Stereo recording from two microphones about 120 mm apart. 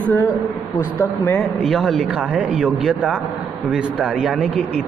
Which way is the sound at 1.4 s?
Centre (ahead or behind).